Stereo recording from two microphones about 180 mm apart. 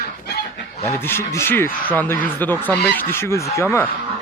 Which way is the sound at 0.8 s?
15° left (ahead or behind).